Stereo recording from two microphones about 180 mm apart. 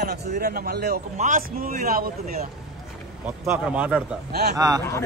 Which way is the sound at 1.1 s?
45° right (ahead or behind).